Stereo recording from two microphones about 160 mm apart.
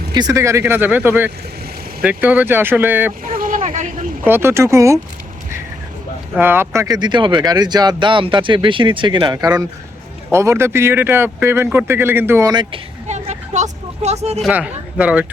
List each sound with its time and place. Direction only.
0.1 s a man's voice: 25° right (ahead or behind)
3.2 s a sound: 60° right (ahead or behind)
4.3 s a man's voice: 15° right (ahead or behind)
6.3 s a man's voice: 15° right (ahead or behind)
13.1 s vehicle: 45° right (ahead or behind)
14.4 s a man's voice: 10° right (ahead or behind)